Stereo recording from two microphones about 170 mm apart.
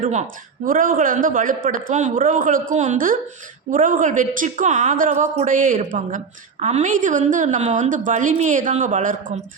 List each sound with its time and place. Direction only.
0.0 s a woman's voice: 45° right (ahead or behind)